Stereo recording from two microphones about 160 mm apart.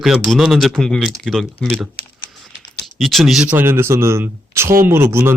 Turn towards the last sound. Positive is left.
turn(degrees=-15)  # may be behind; listen again after turning